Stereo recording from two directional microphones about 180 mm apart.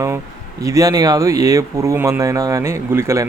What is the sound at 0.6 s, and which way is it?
Speech, 20° right (ahead or behind).